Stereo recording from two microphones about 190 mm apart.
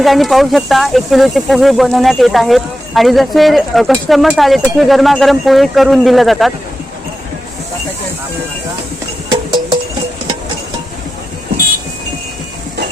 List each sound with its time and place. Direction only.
0.0 s speech: centre (ahead or behind)
9.3 s music: 20° right (ahead or behind)